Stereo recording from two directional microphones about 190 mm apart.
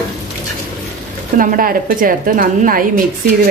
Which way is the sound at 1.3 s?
45° right (ahead or behind).